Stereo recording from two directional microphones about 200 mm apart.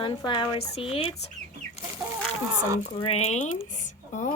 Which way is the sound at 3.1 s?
35° left (ahead or behind).